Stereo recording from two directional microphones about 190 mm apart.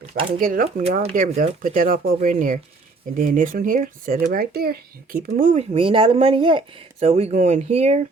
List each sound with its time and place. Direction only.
0.3 s speech: 50° right (ahead or behind)
0.8 s speech: 35° right (ahead or behind)
5.5 s speech: 30° right (ahead or behind)